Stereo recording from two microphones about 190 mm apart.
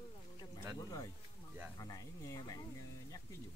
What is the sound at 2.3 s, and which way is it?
Speech, 20° left (ahead or behind).